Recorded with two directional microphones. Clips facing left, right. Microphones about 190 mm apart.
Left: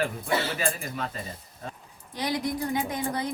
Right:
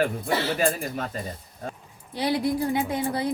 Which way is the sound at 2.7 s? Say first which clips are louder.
Right 3 dB; 30° right (ahead or behind).